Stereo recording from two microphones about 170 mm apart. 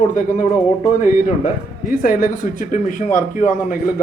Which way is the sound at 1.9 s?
60° left (ahead or behind).